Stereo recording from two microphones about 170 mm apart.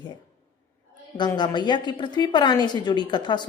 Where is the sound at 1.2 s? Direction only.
25° left (ahead or behind).